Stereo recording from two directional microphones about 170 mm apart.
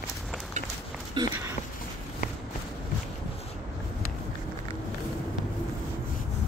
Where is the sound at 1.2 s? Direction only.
25° right (ahead or behind).